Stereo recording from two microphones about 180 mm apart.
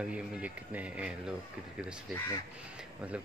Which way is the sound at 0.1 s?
5° right (ahead or behind).